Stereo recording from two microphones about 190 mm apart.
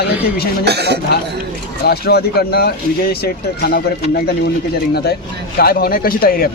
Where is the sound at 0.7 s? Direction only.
60° right (ahead or behind).